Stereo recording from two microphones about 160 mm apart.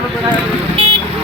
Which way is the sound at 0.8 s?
35° right (ahead or behind).